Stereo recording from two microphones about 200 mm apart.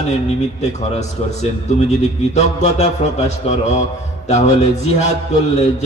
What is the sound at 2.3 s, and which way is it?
A man's voice, 35° left (ahead or behind).